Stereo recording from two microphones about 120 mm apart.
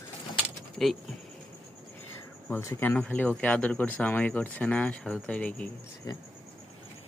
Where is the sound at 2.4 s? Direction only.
20° left (ahead or behind).